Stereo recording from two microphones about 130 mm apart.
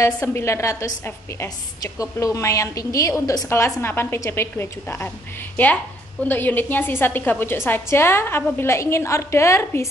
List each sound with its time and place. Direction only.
0.0 s a woman's voice: 20° left (ahead or behind)
6.2 s a woman's voice: 15° left (ahead or behind)